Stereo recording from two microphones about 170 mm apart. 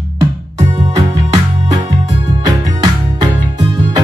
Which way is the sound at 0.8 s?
25° right (ahead or behind).